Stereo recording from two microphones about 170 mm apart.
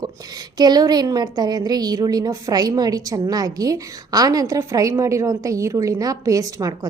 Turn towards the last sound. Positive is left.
turn(degrees=-20)  # may be behind; listen again after turning